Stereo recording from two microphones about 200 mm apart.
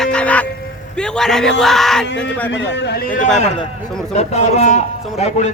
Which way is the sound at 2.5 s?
60° left (ahead or behind).